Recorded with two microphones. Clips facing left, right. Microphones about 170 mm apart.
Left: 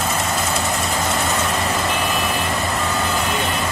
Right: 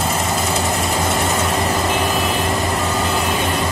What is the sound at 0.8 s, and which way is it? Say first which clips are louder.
Vehicle: right 2 dB; 5° right (ahead or behind).